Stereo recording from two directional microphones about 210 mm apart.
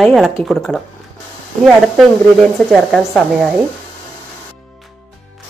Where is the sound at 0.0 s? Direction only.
Centre (ahead or behind).